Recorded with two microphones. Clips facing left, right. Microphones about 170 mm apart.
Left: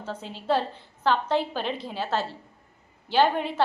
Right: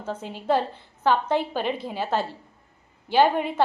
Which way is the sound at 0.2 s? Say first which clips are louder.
Right 3 dB; 50° right (ahead or behind).